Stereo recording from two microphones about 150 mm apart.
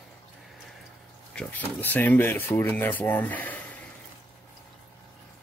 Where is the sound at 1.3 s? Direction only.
10° left (ahead or behind).